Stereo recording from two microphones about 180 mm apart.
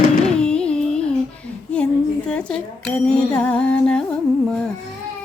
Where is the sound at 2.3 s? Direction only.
5° left (ahead or behind).